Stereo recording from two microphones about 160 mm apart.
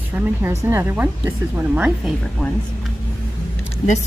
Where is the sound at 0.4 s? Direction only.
15° right (ahead or behind).